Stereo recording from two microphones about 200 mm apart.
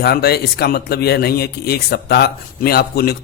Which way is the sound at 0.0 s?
50° left (ahead or behind).